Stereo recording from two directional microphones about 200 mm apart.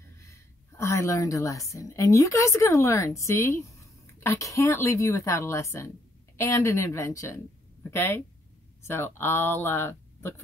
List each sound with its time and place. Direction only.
0.3 s a woman's voice: 15° left (ahead or behind)